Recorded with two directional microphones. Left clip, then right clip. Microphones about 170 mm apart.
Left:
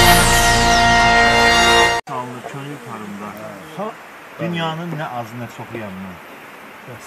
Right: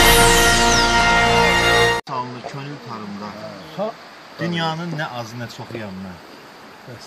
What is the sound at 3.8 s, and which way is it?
Speech, 45° right (ahead or behind).